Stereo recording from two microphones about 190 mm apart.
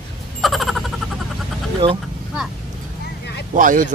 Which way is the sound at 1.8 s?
25° right (ahead or behind).